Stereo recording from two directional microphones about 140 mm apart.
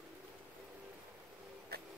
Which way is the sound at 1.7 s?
90° right.